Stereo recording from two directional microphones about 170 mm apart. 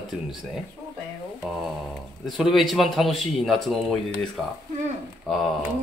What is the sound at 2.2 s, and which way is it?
A man's voice, centre (ahead or behind).